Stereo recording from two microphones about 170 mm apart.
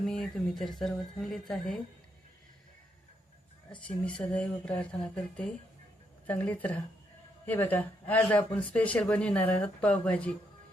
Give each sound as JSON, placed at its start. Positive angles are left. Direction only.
{"t": 0.0, "sound": "speech", "side_deg": 0}
{"t": 3.7, "sound": "speech", "side_deg": 30}
{"t": 4.0, "sound": "speech", "side_deg": 5}
{"t": 6.2, "sound": "speech", "side_deg": 10}